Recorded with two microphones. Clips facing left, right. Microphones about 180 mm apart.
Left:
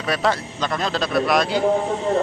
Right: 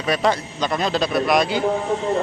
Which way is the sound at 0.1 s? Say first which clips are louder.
Right 2 dB; centre (ahead or behind).